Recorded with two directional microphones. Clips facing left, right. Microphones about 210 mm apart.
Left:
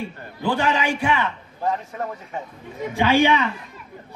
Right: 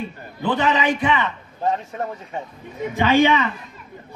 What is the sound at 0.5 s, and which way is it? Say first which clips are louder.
Speech: right 2 dB; 10° left (ahead or behind).